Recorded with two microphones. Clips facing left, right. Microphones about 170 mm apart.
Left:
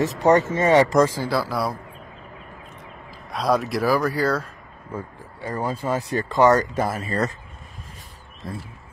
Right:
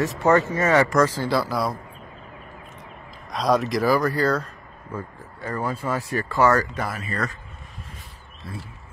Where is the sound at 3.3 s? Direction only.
5° left (ahead or behind); by 7.3 s 35° left (ahead or behind).